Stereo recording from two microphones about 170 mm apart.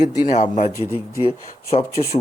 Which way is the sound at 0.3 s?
45° left (ahead or behind).